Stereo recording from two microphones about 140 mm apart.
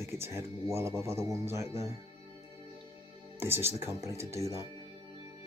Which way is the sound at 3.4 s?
15° right (ahead or behind).